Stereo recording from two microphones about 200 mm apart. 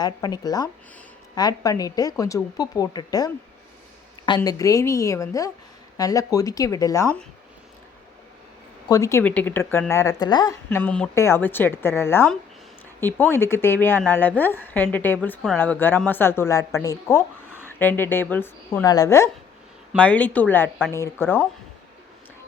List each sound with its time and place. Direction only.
0.0 s a woman's voice: 20° left (ahead or behind)
4.4 s a woman's voice: 15° left (ahead or behind)
8.9 s a woman's voice: 15° left (ahead or behind)